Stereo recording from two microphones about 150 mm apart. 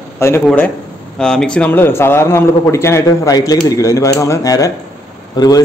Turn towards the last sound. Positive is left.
turn(degrees=25)  # may be behind; listen again after turning